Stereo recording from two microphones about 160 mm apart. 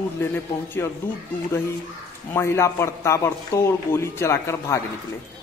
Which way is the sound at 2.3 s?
15° left (ahead or behind).